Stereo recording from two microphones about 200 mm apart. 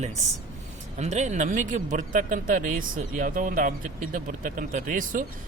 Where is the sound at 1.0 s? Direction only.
35° right (ahead or behind).